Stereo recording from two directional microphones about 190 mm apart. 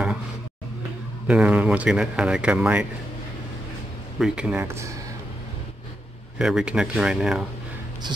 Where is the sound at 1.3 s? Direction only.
5° right (ahead or behind).